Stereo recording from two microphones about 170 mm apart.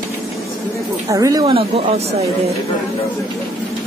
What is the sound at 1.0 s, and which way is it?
Speech, 20° right (ahead or behind).